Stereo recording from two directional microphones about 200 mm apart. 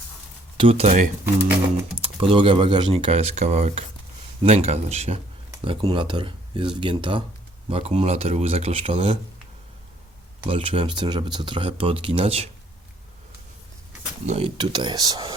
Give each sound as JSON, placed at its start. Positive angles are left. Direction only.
{"t": 0.5, "sound": "speech", "side_deg": -25}
{"t": 10.4, "sound": "speech", "side_deg": -25}
{"t": 14.3, "sound": "speech", "side_deg": -30}